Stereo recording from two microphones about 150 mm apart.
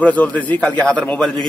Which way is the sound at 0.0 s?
10° left (ahead or behind).